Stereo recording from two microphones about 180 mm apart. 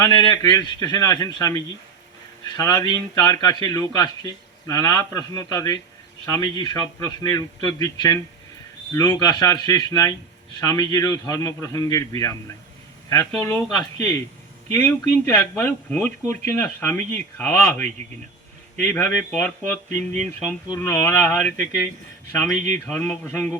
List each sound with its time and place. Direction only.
0.0 s a man's voice: 20° left (ahead or behind)
13.4 s speech: 15° left (ahead or behind)
22.9 s speech: 10° left (ahead or behind)